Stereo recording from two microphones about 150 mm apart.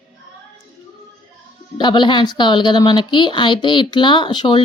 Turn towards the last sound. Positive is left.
turn(degrees=30)  # may be behind; listen again after turning